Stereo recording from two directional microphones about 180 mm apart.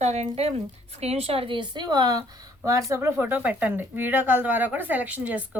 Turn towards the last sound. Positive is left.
turn(degrees=-10)  # may be behind; listen again after turning